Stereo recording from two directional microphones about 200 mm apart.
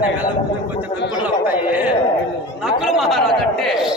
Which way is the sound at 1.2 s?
10° right (ahead or behind).